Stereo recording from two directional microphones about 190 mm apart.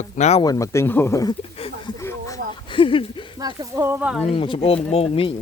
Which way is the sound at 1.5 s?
30° left (ahead or behind).